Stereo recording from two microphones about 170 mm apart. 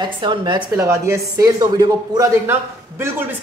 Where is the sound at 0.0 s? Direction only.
25° right (ahead or behind); by 3.3 s 10° right (ahead or behind).